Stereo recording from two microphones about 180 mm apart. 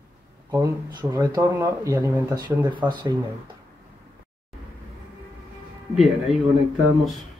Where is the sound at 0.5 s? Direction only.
20° right (ahead or behind).